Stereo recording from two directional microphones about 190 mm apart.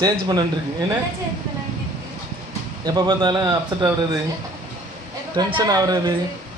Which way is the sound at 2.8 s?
20° right (ahead or behind).